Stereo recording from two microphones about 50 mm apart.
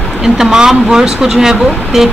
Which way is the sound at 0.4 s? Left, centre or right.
Centre.